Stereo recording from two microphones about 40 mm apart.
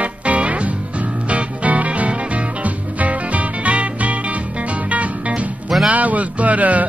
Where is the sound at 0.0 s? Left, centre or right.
Right.